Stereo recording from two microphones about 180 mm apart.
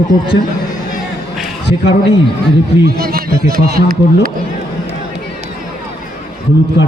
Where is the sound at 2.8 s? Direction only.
55° right (ahead or behind).